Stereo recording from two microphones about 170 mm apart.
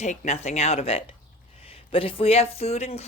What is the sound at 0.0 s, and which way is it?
Speech, 40° left (ahead or behind).